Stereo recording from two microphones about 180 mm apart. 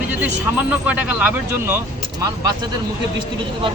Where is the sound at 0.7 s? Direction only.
10° right (ahead or behind).